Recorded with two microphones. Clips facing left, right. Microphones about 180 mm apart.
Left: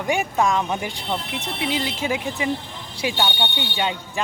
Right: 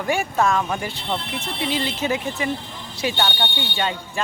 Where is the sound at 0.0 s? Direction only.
15° left (ahead or behind).